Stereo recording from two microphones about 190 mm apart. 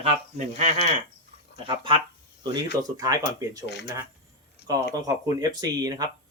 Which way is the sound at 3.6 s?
65° left (ahead or behind).